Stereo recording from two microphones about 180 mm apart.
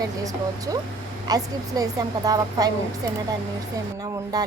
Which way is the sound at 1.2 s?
20° right (ahead or behind).